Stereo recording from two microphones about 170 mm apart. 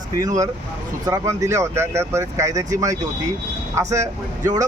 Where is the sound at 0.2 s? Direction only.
20° right (ahead or behind).